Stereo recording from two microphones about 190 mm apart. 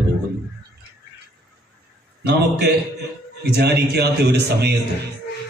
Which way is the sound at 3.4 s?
60° right (ahead or behind).